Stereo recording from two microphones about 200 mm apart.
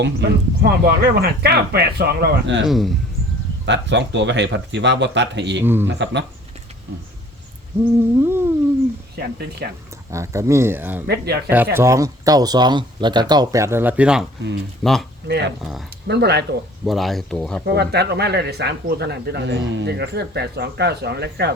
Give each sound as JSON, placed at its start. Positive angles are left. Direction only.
{"t": 0.0, "sound": "speech", "side_deg": -55}
{"t": 2.6, "sound": "speech", "side_deg": 0}
{"t": 3.7, "sound": "speech", "side_deg": -60}
{"t": 5.6, "sound": "speech", "side_deg": -10}
{"t": 5.9, "sound": "speech", "side_deg": -60}
{"t": 8.2, "sound": "speech", "side_deg": -10}
{"t": 9.1, "sound": "speech", "side_deg": -55}
{"t": 10.1, "sound": "speech", "side_deg": -15}
{"t": 11.0, "sound": "speech", "side_deg": -55}
{"t": 11.4, "sound": "speech", "side_deg": -10}
{"t": 15.3, "sound": "speech", "side_deg": -60}
{"t": 16.8, "sound": "speech", "side_deg": 0}
{"t": 17.7, "sound": "speech", "side_deg": -55}